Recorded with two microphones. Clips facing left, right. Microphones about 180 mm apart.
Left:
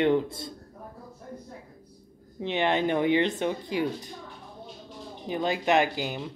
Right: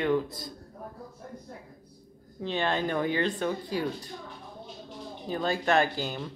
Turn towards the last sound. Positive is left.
turn(degrees=15)  # may be behind; listen again after turning